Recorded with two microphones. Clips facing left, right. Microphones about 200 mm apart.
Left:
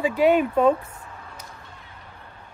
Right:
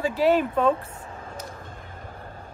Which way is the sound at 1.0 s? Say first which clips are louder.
Right 4 dB; 40° right (ahead or behind).